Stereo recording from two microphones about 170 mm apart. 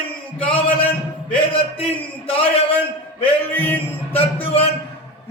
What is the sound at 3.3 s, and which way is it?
Music, 10° left (ahead or behind).